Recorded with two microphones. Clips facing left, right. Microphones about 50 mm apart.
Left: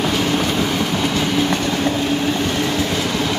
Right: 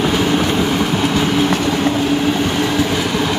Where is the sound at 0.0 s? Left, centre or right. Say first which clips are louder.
Right 3 dB; centre.